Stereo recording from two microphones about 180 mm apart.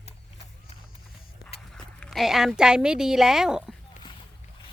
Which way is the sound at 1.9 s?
5° left (ahead or behind).